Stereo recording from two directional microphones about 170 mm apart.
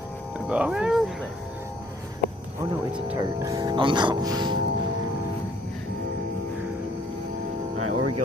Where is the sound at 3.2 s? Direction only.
20° right (ahead or behind).